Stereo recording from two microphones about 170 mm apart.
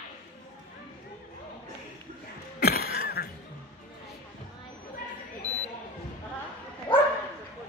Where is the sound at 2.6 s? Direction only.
65° left (ahead or behind).